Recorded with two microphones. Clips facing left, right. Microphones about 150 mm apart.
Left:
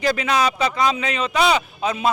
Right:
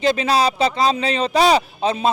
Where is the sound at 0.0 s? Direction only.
25° right (ahead or behind).